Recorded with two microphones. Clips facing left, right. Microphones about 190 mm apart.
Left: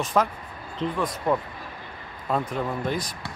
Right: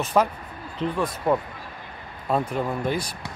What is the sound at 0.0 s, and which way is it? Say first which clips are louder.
Speech: right 2 dB; 10° right (ahead or behind).